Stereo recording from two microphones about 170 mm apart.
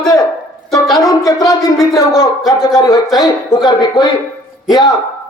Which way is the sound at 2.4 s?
Centre (ahead or behind).